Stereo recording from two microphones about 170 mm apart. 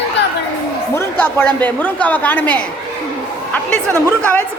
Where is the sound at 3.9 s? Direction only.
15° right (ahead or behind).